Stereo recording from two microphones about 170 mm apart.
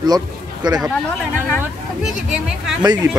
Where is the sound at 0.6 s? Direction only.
25° right (ahead or behind).